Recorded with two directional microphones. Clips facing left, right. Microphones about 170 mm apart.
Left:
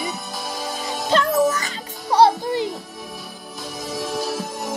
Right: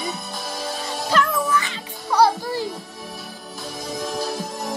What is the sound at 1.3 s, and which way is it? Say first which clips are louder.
Music: left 4 dB; 40° left (ahead or behind).